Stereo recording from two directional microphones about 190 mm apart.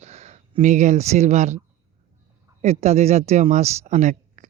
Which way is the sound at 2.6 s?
35° right (ahead or behind).